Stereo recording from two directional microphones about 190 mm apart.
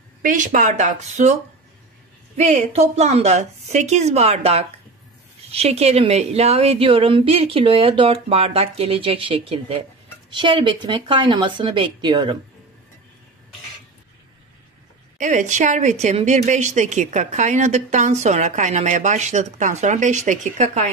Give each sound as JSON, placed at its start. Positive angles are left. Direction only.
{"t": 0.2, "sound": "a woman's voice", "side_deg": -45}
{"t": 15.1, "sound": "a woman's voice", "side_deg": -40}